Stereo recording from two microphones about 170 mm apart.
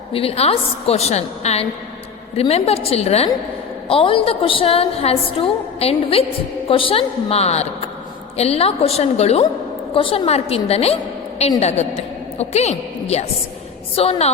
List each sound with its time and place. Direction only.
0.1 s a woman's voice: 35° left (ahead or behind)